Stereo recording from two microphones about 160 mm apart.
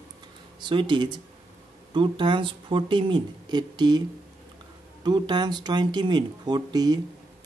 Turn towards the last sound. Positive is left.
turn(degrees=-25)  # may be behind; listen again after turning